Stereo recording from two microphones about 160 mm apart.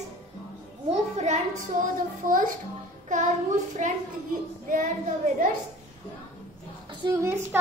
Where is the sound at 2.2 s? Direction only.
60° right (ahead or behind).